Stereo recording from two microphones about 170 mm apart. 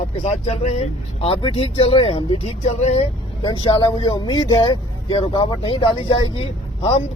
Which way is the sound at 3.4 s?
25° left (ahead or behind).